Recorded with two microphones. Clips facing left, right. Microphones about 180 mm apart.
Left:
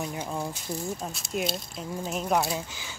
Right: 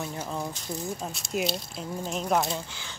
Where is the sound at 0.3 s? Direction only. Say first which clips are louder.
Left 1 dB; 10° left (ahead or behind).